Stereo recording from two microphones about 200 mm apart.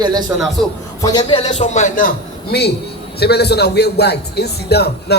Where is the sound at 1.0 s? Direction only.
20° left (ahead or behind).